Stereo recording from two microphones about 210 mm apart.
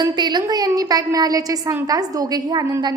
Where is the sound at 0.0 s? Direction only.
20° right (ahead or behind).